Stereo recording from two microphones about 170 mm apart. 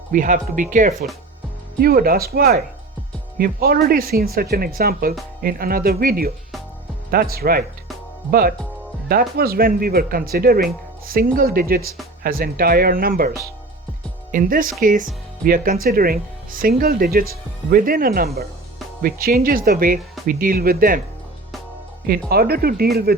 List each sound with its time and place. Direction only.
0.1 s speech: 50° right (ahead or behind)
1.8 s speech: 60° right (ahead or behind)
14.3 s speech: 55° right (ahead or behind)
22.3 s speech: 65° right (ahead or behind)